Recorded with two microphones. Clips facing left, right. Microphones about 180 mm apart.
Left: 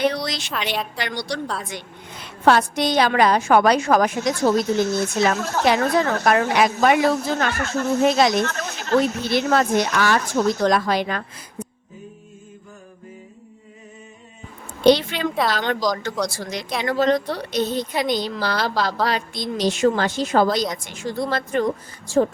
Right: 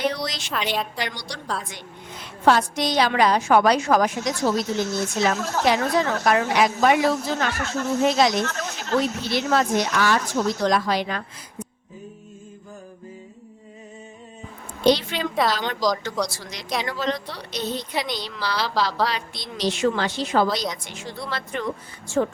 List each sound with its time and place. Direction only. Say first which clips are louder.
0.0 s a sound: left 3 dB; 65° left (ahead or behind)
0.5 s a woman's voice: right 1 dB; centre (ahead or behind)
1.0 s a woman's voice: left 5 dB; 65° left (ahead or behind)
2.4 s a woman's voice: left 2 dB; 60° left (ahead or behind)
14.8 s a woman's voice: left 4 dB; 60° left (ahead or behind); by 22.3 s 35° left (ahead or behind)